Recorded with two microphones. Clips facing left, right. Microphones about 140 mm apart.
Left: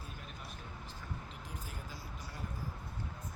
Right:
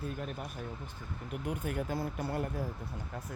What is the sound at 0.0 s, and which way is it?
Speech, 55° right (ahead or behind).